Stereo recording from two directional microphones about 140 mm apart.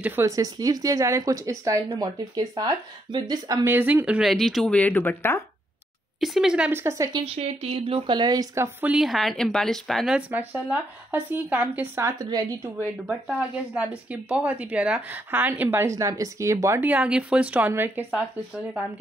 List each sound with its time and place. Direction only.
0.0 s speech: 15° right (ahead or behind)
0.4 s speech: 25° right (ahead or behind)
3.7 s speech: 10° right (ahead or behind); by 5.4 s 15° left (ahead or behind)
6.2 s speech: 5° right (ahead or behind)
6.7 s speech: 20° right (ahead or behind)
7.3 s speech: 45° right (ahead or behind); by 8.6 s 25° right (ahead or behind)
8.8 s speech: 5° right (ahead or behind); by 12.7 s 25° right (ahead or behind)
13.0 s speech: 5° right (ahead or behind)